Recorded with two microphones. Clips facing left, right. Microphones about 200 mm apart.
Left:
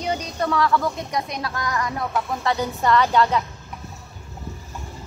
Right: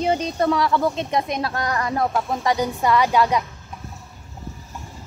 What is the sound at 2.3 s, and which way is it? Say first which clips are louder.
A woman's voice: right 2 dB; 15° right (ahead or behind).